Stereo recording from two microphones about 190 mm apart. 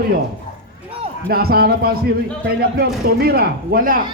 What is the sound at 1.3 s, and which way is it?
Speech, 55° right (ahead or behind).